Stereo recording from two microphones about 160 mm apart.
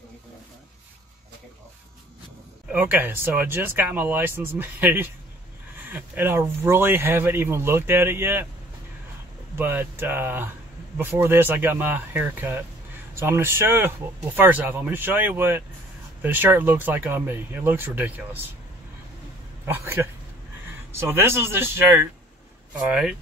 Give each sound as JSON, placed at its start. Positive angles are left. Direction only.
{"t": 2.7, "sound": "speech", "side_deg": -10}
{"t": 9.6, "sound": "speech", "side_deg": -15}
{"t": 19.6, "sound": "speech", "side_deg": -15}